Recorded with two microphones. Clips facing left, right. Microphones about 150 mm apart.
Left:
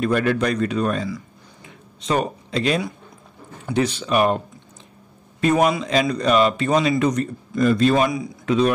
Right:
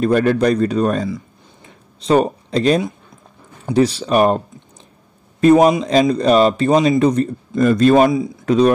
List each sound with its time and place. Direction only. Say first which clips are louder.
0.0 s speech: right 5 dB; 40° right (ahead or behind)
1.0 s a sound: right 4 dB; 30° right (ahead or behind)
3.7 s speech: right 5 dB; 35° right (ahead or behind)
5.4 s speech: right 7 dB; 35° right (ahead or behind)
7.5 s speech: right 5 dB; 45° right (ahead or behind)